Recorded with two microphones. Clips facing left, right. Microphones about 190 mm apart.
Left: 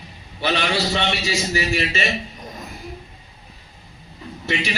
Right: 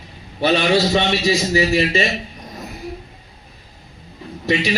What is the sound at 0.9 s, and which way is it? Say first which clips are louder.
A man's voice: right 6 dB; 35° right (ahead or behind).